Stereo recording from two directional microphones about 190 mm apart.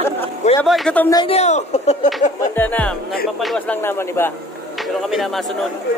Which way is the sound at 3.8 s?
15° left (ahead or behind).